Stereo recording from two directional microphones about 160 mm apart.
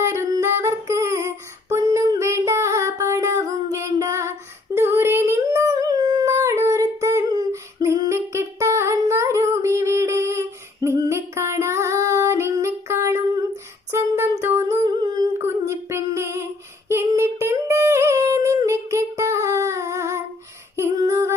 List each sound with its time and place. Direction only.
0.0 s female singing: 15° right (ahead or behind)
4.7 s a sound: 15° right (ahead or behind)
13.9 s humming: 15° right (ahead or behind)
21.0 s female singing: 20° right (ahead or behind)